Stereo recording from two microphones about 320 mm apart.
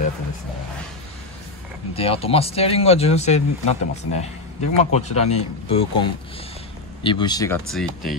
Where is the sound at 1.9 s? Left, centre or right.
Centre.